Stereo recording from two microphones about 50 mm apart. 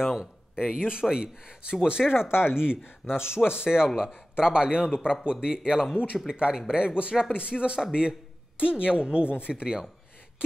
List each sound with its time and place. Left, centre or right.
0.0 s speech: centre